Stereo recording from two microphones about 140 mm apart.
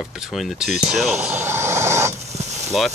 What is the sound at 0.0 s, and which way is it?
Speech, centre (ahead or behind).